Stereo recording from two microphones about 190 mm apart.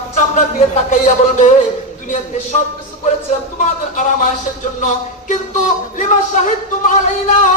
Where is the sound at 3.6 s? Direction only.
40° left (ahead or behind).